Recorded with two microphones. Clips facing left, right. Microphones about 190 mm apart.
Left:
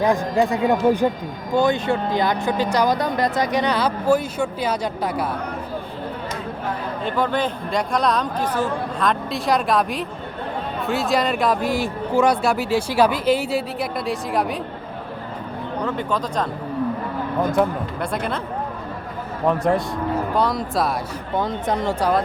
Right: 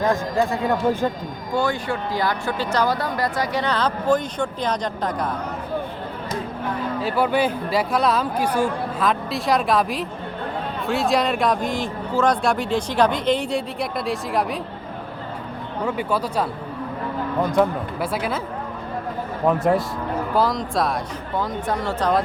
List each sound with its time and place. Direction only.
0.0 s speech: 15° left (ahead or behind)
7.0 s speech: 10° right (ahead or behind)
15.9 s speech: 10° right (ahead or behind)
17.5 s speech: centre (ahead or behind)
19.5 s speech: 5° right (ahead or behind)
21.3 s speech: 20° left (ahead or behind)